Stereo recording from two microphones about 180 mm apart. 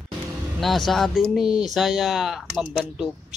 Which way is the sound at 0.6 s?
Centre (ahead or behind).